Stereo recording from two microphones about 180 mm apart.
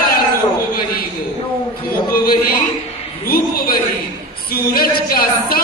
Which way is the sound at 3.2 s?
55° left (ahead or behind).